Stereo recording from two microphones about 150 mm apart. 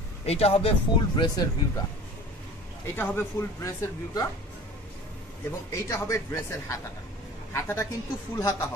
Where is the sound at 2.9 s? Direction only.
15° left (ahead or behind).